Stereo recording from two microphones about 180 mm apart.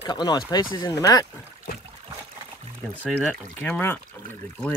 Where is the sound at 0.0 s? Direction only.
25° left (ahead or behind).